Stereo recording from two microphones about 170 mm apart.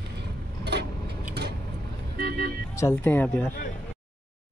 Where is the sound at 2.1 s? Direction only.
70° right (ahead or behind).